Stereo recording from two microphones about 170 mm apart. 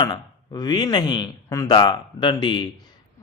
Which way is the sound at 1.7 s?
30° left (ahead or behind).